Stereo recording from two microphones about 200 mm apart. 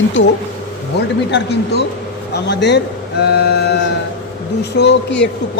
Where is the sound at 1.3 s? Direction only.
60° left (ahead or behind).